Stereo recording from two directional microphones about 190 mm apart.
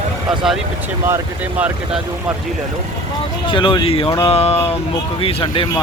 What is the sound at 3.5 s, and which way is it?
Speech, 25° left (ahead or behind).